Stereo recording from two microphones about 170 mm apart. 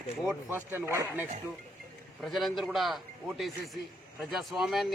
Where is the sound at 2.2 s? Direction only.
Centre (ahead or behind).